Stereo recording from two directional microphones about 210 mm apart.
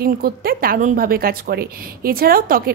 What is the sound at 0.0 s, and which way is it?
Speech, 45° right (ahead or behind).